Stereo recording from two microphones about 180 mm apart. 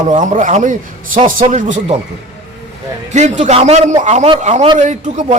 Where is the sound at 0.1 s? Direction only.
45° right (ahead or behind).